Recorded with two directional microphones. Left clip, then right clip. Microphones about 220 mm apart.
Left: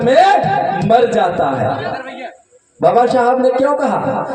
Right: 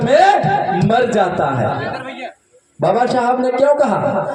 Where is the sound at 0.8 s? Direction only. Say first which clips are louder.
Left 3 dB; 50° right (ahead or behind).